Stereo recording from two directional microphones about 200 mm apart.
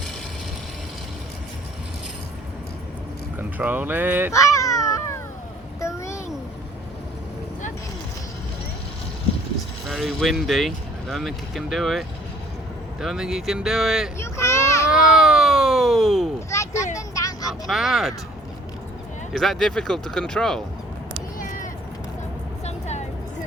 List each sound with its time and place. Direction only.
3.3 s speech: 10° right (ahead or behind)
4.3 s a sound: 15° left (ahead or behind)
9.8 s speech: centre (ahead or behind)
14.2 s a sound: 15° left (ahead or behind)
14.8 s cat: 5° right (ahead or behind)
16.5 s a sound: 15° left (ahead or behind)
16.9 s vehicle: 15° left (ahead or behind)
17.5 s speech: centre (ahead or behind)
19.3 s speech: centre (ahead or behind)
21.3 s cat: 40° left (ahead or behind)
22.6 s vehicle: 35° left (ahead or behind)